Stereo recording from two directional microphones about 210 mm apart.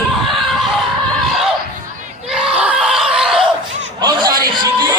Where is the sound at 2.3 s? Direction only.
5° right (ahead or behind).